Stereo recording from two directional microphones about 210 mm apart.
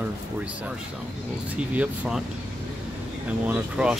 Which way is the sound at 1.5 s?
5° right (ahead or behind).